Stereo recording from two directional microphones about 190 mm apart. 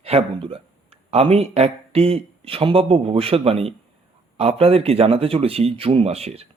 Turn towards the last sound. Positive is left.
turn(degrees=-30)  # may be behind; listen again after turning